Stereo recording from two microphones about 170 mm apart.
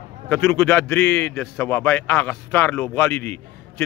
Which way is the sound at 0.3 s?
15° left (ahead or behind).